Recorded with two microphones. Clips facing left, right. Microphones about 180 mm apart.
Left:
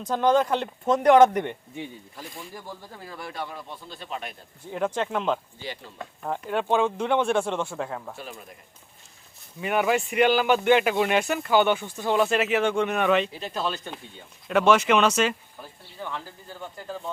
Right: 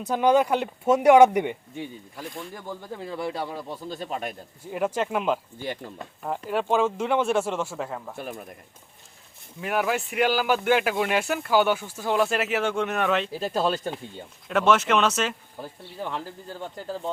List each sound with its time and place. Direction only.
0.1 s speech: 10° right (ahead or behind)
1.7 s speech: centre (ahead or behind)
3.1 s speech: 30° right (ahead or behind); by 4.4 s 45° right (ahead or behind)
4.7 s speech: 10° right (ahead or behind)
5.5 s speech: 50° right (ahead or behind)
6.2 s speech: 5° right (ahead or behind)
8.1 s speech: 55° right (ahead or behind)
9.6 s speech: centre (ahead or behind)
13.3 s speech: 45° right (ahead or behind)
14.4 s speech: centre (ahead or behind)